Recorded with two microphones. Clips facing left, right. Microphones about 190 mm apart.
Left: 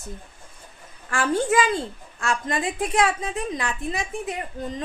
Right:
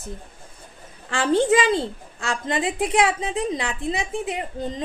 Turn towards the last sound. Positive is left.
turn(degrees=-25)  # may be behind; listen again after turning